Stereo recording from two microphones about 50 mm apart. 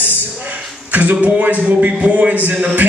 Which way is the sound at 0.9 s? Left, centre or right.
Right.